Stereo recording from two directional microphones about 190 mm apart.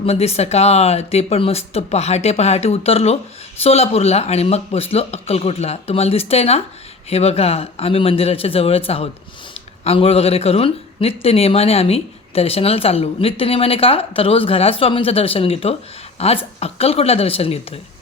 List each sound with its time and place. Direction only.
0.0 s speech: 35° left (ahead or behind)